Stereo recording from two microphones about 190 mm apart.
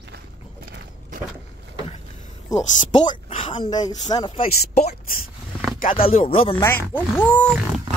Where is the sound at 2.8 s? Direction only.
40° left (ahead or behind).